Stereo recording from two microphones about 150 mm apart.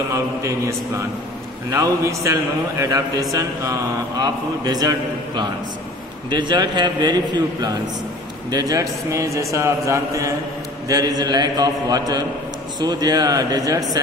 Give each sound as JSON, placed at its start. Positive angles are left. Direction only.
{"t": 0.1, "sound": "speech", "side_deg": -20}